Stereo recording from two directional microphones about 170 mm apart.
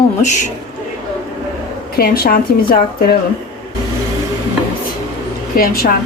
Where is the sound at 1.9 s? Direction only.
60° left (ahead or behind).